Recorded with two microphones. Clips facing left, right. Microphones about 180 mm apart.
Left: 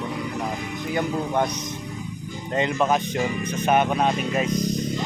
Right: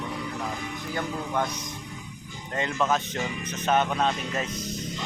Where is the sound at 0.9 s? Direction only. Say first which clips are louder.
Left 6 dB; 20° left (ahead or behind).